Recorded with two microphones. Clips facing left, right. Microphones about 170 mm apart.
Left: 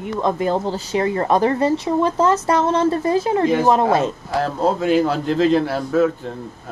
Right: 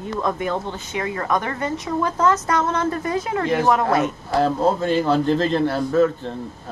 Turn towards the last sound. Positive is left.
turn(degrees=5)  # may be behind; listen again after turning